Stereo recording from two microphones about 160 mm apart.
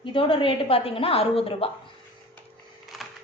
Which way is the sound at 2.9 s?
Centre (ahead or behind).